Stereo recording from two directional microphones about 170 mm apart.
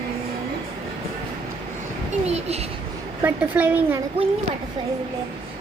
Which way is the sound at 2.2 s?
40° right (ahead or behind).